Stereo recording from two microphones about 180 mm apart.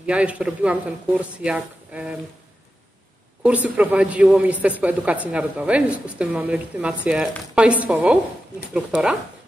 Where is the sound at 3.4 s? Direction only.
5° right (ahead or behind).